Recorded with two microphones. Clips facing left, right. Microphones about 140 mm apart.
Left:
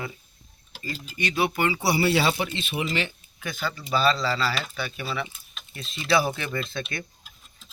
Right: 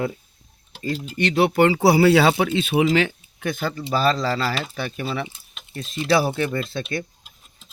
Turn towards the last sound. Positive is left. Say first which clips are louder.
# right 5 dB
turn(degrees=-35)  # may be behind; listen again after turning